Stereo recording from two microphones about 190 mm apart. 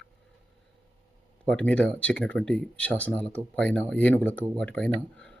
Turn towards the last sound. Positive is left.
turn(degrees=5)  # may be behind; listen again after turning